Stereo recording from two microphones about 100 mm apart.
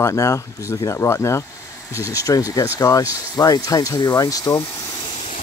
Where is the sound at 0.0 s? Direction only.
35° left (ahead or behind).